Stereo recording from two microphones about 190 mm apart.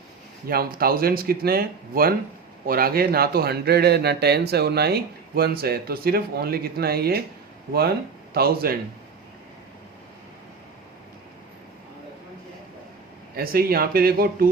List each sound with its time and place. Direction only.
0.4 s speech: 50° right (ahead or behind)
8.3 s speech: 55° right (ahead or behind)
13.3 s speech: 55° right (ahead or behind)